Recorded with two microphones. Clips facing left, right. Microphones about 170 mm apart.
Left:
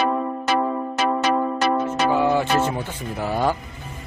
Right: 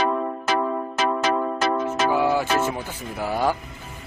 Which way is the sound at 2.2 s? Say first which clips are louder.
Left 2 dB; 10° right (ahead or behind).